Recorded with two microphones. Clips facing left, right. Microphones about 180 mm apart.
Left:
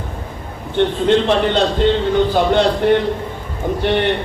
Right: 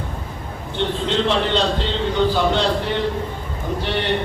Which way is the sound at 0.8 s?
55° left (ahead or behind).